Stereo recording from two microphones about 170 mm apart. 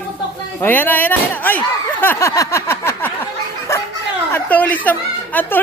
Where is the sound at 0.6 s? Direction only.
10° left (ahead or behind).